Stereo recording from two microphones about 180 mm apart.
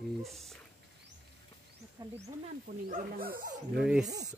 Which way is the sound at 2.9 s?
50° right (ahead or behind).